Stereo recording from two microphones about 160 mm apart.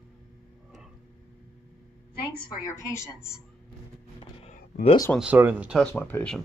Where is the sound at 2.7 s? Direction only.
20° left (ahead or behind).